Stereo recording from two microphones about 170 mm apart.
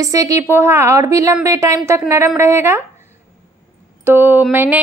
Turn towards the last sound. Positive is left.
turn(degrees=-10)  # may be behind; listen again after turning